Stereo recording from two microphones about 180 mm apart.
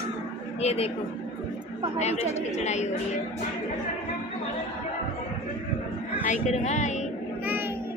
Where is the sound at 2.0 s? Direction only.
40° left (ahead or behind).